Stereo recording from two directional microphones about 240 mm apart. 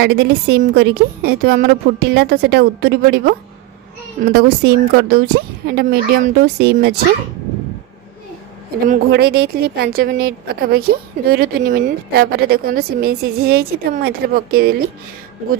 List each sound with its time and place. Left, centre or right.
0.0 s speech: right
8.8 s speech: right